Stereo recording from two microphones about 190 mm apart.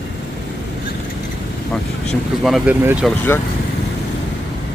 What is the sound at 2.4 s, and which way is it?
Speech, centre (ahead or behind).